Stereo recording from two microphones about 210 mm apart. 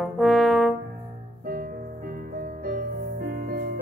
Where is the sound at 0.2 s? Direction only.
Centre (ahead or behind).